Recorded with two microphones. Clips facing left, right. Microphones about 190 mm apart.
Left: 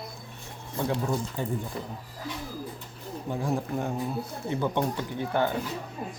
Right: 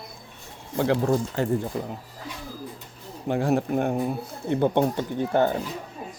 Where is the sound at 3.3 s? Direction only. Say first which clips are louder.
Right 7 dB; 75° right (ahead or behind); by 5.5 s 45° right (ahead or behind).